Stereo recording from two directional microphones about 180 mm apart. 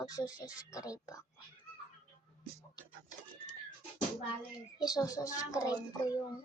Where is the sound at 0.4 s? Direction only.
20° left (ahead or behind).